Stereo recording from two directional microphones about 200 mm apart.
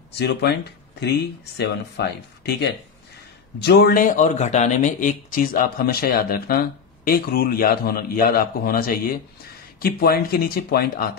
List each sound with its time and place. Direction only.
0.9 s speech: 55° left (ahead or behind)